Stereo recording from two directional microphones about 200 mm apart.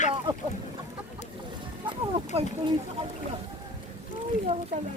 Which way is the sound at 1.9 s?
25° right (ahead or behind).